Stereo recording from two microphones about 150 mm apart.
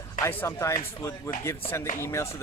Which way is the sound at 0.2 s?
15° left (ahead or behind).